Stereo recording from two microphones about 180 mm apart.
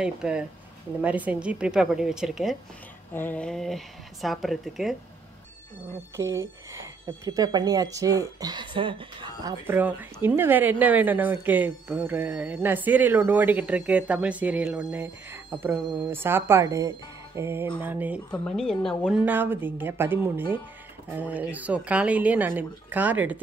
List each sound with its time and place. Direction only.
0.0 s speech: 5° right (ahead or behind)
3.1 s speech: 10° left (ahead or behind)
6.1 s a woman's voice: 15° right (ahead or behind)
9.8 s a woman's voice: 10° right (ahead or behind)
18.3 s speech: 5° left (ahead or behind)
19.2 s a woman's voice: 10° right (ahead or behind)